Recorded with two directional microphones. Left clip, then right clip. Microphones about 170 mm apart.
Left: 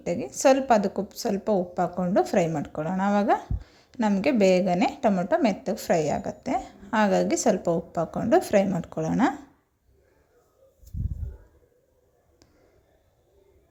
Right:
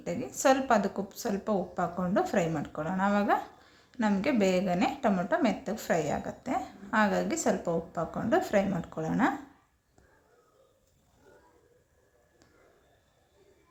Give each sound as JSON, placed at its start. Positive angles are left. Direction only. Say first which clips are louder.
{"t": 0.0, "sound": "a woman's voice", "louder": "left 6 dB", "side_deg": 30}